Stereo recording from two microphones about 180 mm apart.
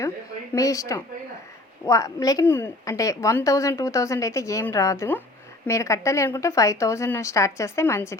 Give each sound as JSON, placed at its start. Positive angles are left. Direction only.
{"t": 0.5, "sound": "a woman's voice", "side_deg": 20}